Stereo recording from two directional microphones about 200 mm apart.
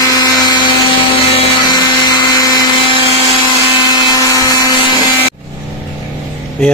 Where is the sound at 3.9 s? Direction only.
15° left (ahead or behind).